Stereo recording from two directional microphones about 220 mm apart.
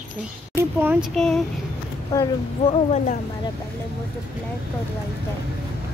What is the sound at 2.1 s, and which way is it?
Speech, 20° left (ahead or behind).